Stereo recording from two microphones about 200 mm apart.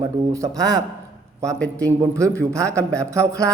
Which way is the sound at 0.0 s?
15° right (ahead or behind).